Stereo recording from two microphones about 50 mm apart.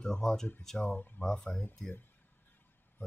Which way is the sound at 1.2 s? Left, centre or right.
Centre.